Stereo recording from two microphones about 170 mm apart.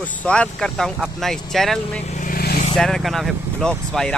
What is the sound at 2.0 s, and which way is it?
Vehicle, 45° left (ahead or behind).